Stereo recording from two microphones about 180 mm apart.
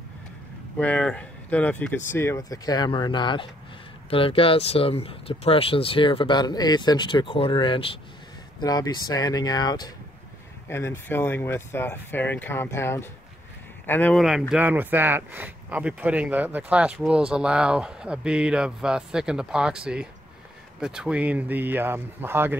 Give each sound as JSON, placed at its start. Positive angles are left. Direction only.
{"t": 0.7, "sound": "speech", "side_deg": 10}
{"t": 14.5, "sound": "speech", "side_deg": -10}